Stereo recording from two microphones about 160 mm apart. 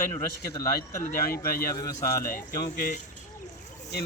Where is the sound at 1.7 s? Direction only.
20° left (ahead or behind).